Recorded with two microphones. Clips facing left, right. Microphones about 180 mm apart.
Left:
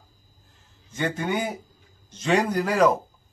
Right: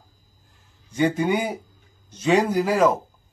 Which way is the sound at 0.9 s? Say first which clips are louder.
Right 5 dB; 10° right (ahead or behind).